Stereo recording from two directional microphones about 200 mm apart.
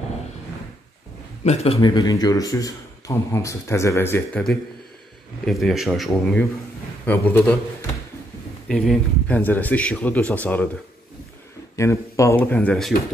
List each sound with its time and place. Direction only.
1.4 s a man's voice: 30° left (ahead or behind); by 10.7 s 10° left (ahead or behind)
11.7 s a man's voice: 15° left (ahead or behind)